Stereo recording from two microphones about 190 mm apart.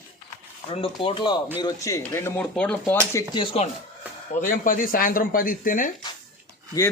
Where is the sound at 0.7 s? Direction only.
30° left (ahead or behind); by 3.2 s 15° left (ahead or behind).